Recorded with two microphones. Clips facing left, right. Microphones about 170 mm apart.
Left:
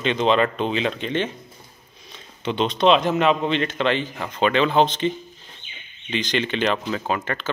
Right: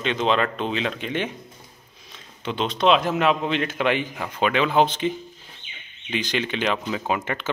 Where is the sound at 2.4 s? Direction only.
Centre (ahead or behind).